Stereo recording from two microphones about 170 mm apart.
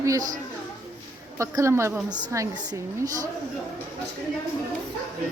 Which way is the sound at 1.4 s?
15° right (ahead or behind).